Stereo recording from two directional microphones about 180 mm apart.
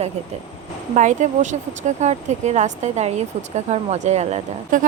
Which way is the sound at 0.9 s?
40° right (ahead or behind).